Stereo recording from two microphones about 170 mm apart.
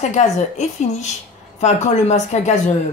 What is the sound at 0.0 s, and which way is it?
A woman's voice, 40° left (ahead or behind).